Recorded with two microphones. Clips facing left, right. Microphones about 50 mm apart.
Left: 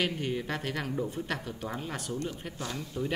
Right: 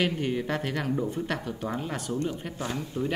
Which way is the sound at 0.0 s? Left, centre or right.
Centre.